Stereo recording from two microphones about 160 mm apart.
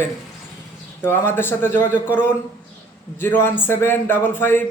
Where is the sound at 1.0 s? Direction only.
15° left (ahead or behind).